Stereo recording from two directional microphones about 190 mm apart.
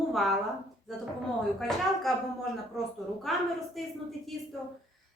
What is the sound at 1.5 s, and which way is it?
Speech, centre (ahead or behind).